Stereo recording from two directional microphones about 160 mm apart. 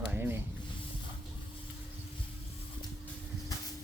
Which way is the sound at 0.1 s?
15° right (ahead or behind).